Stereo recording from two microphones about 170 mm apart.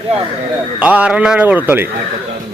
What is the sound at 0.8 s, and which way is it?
Speech, 10° right (ahead or behind).